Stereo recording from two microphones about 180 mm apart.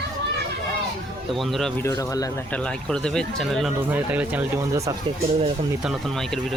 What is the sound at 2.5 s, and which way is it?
Speech, 5° left (ahead or behind).